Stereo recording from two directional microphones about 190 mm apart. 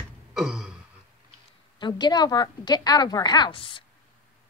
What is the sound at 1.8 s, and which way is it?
A woman's voice, 20° left (ahead or behind).